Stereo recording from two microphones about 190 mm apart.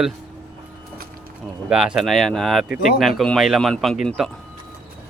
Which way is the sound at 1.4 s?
5° right (ahead or behind).